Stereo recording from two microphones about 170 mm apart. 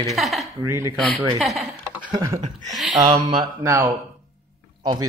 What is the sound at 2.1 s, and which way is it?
Speech, 20° right (ahead or behind).